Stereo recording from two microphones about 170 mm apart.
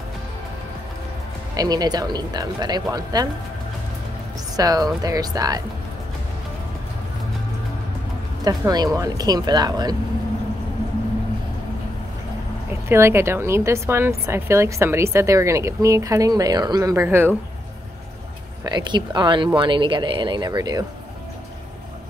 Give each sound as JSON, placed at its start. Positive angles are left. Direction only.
{"t": 1.6, "sound": "speech", "side_deg": -25}
{"t": 4.6, "sound": "speech", "side_deg": -20}
{"t": 8.5, "sound": "speech", "side_deg": -20}
{"t": 12.8, "sound": "a woman's voice", "side_deg": -15}
{"t": 18.6, "sound": "speech", "side_deg": -25}